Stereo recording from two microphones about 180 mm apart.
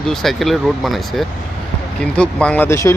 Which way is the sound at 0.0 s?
Centre (ahead or behind).